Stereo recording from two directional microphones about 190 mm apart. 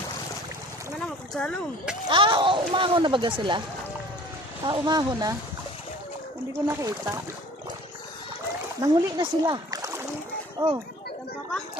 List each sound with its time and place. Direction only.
0.9 s rowboat: 5° left (ahead or behind)
2.0 s speech: 25° right (ahead or behind)
4.6 s speech: 20° right (ahead or behind)
6.5 s speech: 15° right (ahead or behind)
8.8 s speech: 20° right (ahead or behind)